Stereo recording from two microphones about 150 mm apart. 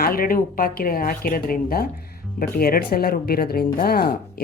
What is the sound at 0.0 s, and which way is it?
Speech, 75° left (ahead or behind).